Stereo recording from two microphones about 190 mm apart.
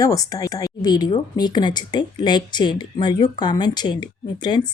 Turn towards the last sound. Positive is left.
turn(degrees=25)  # may be behind; listen again after turning